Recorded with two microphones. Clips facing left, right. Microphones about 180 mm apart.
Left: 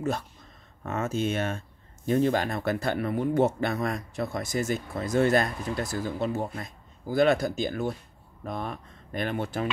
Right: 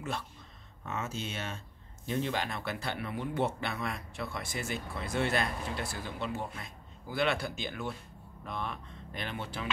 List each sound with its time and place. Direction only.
0.8 s speech: 50° left (ahead or behind)